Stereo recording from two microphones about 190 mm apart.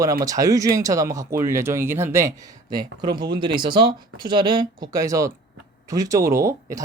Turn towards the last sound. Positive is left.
turn(degrees=-15)  # may be behind; listen again after turning